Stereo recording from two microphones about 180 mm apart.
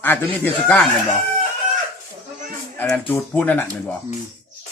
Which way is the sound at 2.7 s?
10° left (ahead or behind).